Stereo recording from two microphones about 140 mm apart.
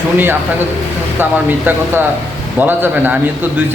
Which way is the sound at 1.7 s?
15° right (ahead or behind).